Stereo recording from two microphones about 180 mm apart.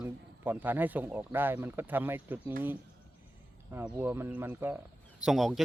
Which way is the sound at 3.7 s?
10° right (ahead or behind).